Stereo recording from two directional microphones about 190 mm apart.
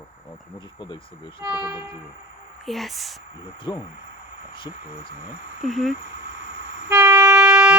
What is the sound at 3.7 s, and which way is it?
Speech, 25° left (ahead or behind).